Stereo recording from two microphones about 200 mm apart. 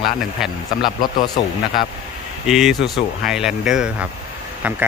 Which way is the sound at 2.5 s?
Centre (ahead or behind).